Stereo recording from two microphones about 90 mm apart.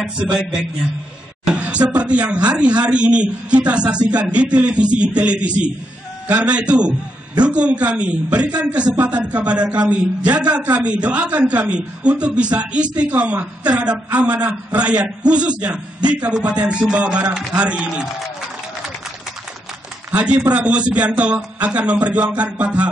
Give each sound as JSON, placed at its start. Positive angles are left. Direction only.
{"t": 0.0, "sound": "speech", "side_deg": -10}
{"t": 20.2, "sound": "speech", "side_deg": -15}